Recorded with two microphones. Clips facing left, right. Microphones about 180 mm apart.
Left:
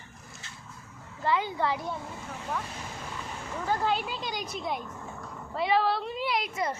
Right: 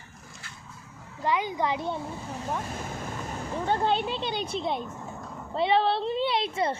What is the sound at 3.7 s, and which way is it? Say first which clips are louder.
A woman's voice: right 2 dB; 30° right (ahead or behind).